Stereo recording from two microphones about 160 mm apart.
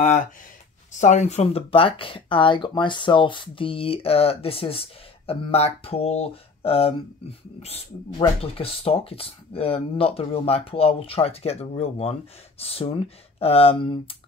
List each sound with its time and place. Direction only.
0.9 s speech: 50° left (ahead or behind)